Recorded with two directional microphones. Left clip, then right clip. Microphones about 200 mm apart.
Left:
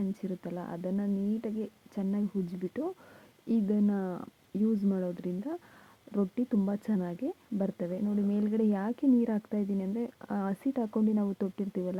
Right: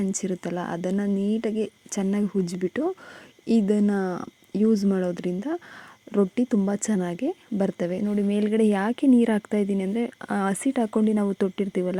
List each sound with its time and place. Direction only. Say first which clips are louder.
0.1 s speech: right 9 dB; 30° right (ahead or behind)